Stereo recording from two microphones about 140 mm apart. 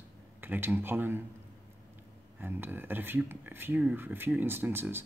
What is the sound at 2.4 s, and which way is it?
Speech, 15° right (ahead or behind).